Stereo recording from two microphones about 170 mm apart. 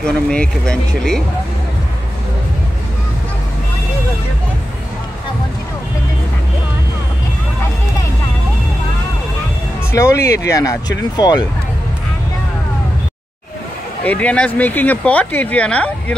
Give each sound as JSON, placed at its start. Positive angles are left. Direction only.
{"t": 0.0, "sound": "speech", "side_deg": 5}
{"t": 9.9, "sound": "speech", "side_deg": 20}
{"t": 14.0, "sound": "speech", "side_deg": 10}